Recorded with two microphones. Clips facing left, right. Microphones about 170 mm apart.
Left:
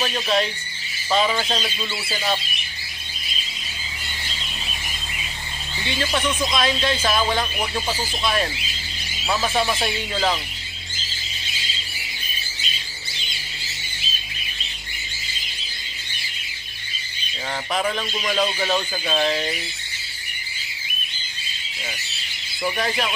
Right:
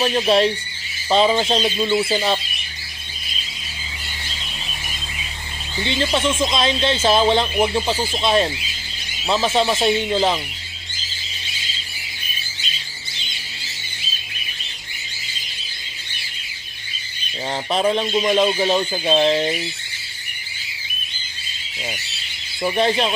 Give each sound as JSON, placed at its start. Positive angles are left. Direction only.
{"t": 0.0, "sound": "speech", "side_deg": -30}
{"t": 5.9, "sound": "speech", "side_deg": -25}
{"t": 17.6, "sound": "speech", "side_deg": -30}
{"t": 22.6, "sound": "speech", "side_deg": -25}